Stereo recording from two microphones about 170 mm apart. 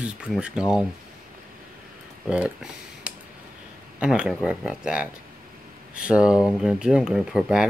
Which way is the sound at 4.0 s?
5° right (ahead or behind).